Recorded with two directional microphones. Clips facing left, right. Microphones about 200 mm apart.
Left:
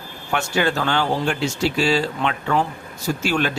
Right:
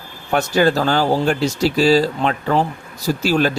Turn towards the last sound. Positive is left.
turn(degrees=-35)  # may be behind; listen again after turning